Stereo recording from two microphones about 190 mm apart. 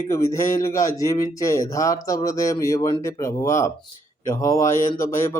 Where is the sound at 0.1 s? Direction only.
15° left (ahead or behind).